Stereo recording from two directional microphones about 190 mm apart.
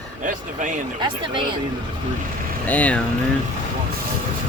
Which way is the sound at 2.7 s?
5° left (ahead or behind).